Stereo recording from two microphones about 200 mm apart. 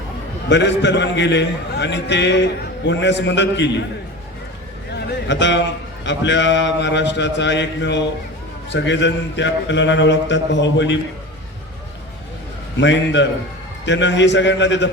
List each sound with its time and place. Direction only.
0.4 s a man's voice: 60° left (ahead or behind)
4.9 s a sound: 60° left (ahead or behind)
6.1 s a man's voice: 65° left (ahead or behind)
12.7 s a man's voice: 65° left (ahead or behind)